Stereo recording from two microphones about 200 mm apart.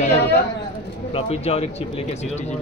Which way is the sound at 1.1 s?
30° left (ahead or behind).